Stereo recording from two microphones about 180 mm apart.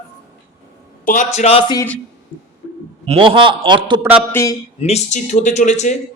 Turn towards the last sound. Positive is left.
turn(degrees=40)  # may be behind; listen again after turning